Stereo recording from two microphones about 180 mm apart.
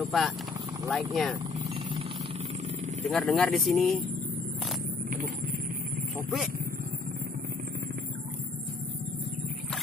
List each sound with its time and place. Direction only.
0.0 s speech: centre (ahead or behind)
3.1 s speech: centre (ahead or behind)